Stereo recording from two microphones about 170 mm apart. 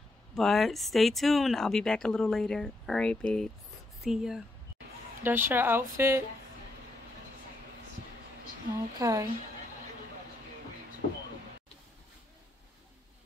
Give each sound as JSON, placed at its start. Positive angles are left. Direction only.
{"t": 0.3, "sound": "speech", "side_deg": 0}
{"t": 9.0, "sound": "a woman's voice", "side_deg": -20}